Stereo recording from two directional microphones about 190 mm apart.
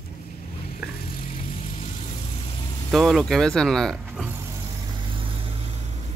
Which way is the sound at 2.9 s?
Centre (ahead or behind).